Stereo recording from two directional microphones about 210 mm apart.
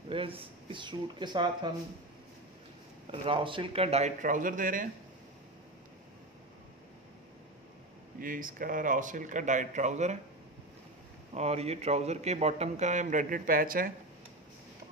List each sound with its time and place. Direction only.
0.1 s a man's voice: 25° right (ahead or behind)
3.1 s a man's voice: 25° right (ahead or behind); by 4.8 s 40° right (ahead or behind)
8.2 s a man's voice: 40° right (ahead or behind)
11.3 s a man's voice: 30° right (ahead or behind)